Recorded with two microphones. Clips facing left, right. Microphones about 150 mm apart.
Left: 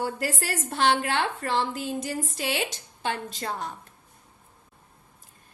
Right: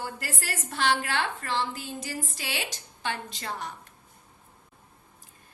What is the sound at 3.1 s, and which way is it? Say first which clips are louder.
Speech: left 3 dB; 45° left (ahead or behind).